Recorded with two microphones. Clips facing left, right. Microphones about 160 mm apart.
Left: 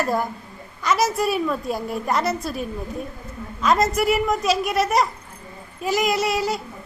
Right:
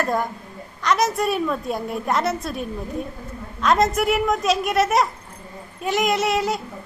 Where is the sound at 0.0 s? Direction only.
5° left (ahead or behind).